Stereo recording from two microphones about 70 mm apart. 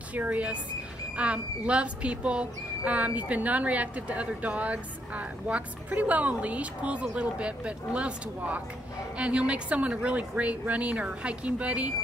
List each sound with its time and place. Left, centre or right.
0.1 s speech: right